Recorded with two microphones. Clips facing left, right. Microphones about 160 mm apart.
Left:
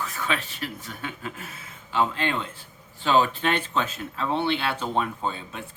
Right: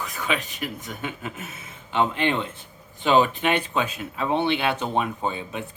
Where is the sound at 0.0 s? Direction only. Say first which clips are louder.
Right 1 dB; 15° right (ahead or behind).